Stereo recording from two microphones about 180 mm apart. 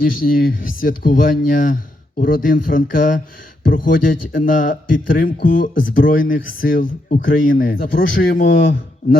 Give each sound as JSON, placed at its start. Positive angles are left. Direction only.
{"t": 0.1, "sound": "a man's voice", "side_deg": 50}